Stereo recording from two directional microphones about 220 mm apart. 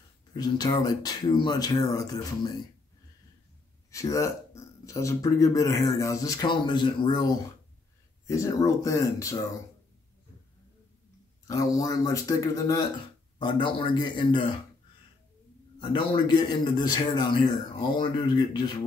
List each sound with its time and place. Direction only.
0.4 s speech: 15° left (ahead or behind)
3.9 s speech: 15° left (ahead or behind)
8.3 s speech: 15° left (ahead or behind)
11.4 s a man's voice: 15° left (ahead or behind)
15.8 s a man's voice: 20° left (ahead or behind)